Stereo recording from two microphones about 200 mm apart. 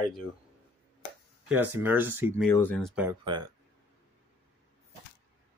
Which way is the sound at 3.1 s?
20° right (ahead or behind).